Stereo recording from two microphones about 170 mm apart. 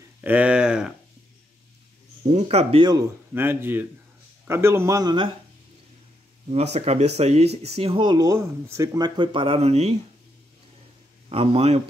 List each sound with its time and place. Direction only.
0.2 s speech: 10° right (ahead or behind)
2.3 s speech: 35° right (ahead or behind)
3.3 s speech: 15° right (ahead or behind)
6.5 s speech: 40° right (ahead or behind)
11.2 s speech: 35° right (ahead or behind)